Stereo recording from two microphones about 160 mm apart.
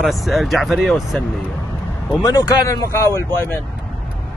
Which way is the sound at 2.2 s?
20° left (ahead or behind).